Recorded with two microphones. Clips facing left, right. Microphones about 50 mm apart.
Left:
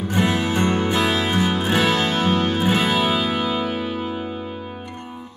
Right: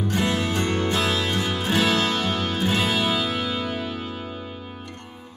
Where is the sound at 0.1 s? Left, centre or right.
Centre.